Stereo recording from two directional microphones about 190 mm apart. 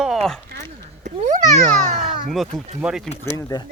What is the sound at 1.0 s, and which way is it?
Speech, 40° right (ahead or behind).